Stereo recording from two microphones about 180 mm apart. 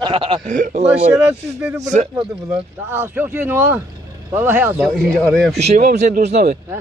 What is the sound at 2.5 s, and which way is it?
Speech, 10° right (ahead or behind).